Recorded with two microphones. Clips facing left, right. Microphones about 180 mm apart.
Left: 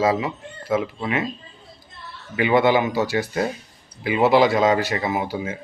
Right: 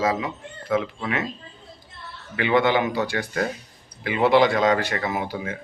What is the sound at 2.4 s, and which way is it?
Speech, 10° left (ahead or behind).